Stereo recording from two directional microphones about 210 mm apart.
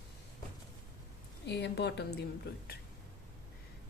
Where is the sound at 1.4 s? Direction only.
50° left (ahead or behind).